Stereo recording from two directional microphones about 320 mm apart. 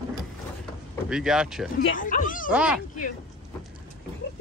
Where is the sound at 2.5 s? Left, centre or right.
Centre.